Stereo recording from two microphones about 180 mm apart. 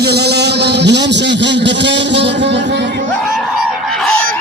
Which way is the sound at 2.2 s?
75° right (ahead or behind).